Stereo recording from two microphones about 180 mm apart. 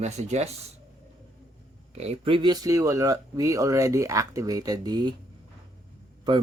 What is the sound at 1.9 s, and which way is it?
Speech, 35° right (ahead or behind).